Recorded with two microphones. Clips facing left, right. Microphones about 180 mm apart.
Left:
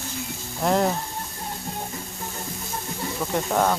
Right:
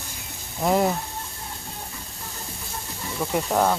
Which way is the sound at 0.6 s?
5° right (ahead or behind).